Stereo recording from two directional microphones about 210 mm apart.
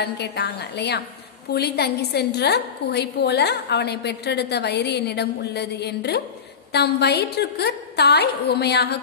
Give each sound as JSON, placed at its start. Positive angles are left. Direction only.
{"t": 0.0, "sound": "a woman's voice", "side_deg": 50}